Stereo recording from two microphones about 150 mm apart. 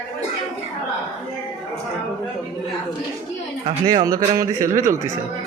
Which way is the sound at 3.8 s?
25° right (ahead or behind).